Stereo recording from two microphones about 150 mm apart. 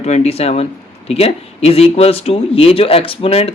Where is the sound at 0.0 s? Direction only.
45° left (ahead or behind).